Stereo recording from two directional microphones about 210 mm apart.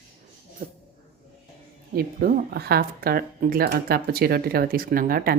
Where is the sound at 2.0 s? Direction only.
45° right (ahead or behind).